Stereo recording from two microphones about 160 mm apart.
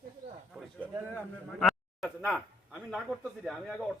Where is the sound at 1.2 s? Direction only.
Centre (ahead or behind).